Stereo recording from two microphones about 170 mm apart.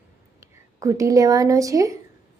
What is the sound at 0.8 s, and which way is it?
Speech, 20° right (ahead or behind).